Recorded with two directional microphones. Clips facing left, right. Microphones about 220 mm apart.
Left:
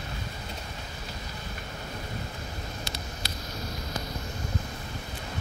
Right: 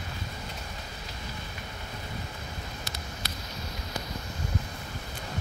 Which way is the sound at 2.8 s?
30° left (ahead or behind).